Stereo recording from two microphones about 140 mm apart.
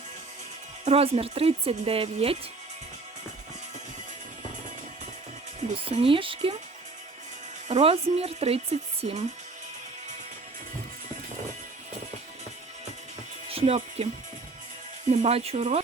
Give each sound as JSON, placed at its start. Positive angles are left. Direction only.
{"t": 0.9, "sound": "speech", "side_deg": -45}
{"t": 5.9, "sound": "speech", "side_deg": -40}
{"t": 7.7, "sound": "speech", "side_deg": -45}
{"t": 13.5, "sound": "speech", "side_deg": -45}
{"t": 15.1, "sound": "speech", "side_deg": -50}